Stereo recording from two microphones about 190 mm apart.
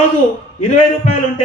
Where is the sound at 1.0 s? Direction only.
35° left (ahead or behind).